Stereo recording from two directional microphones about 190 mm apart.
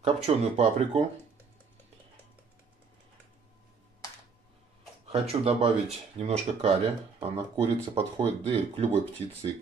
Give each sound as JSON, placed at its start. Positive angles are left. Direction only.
{"t": 0.0, "sound": "speech", "side_deg": -30}
{"t": 5.0, "sound": "speech", "side_deg": -30}